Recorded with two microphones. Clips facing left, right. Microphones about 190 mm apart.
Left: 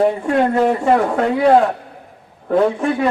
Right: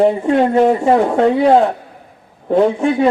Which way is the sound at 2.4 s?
25° right (ahead or behind).